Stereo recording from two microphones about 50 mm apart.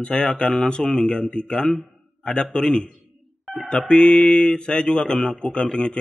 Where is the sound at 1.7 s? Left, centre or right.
Centre.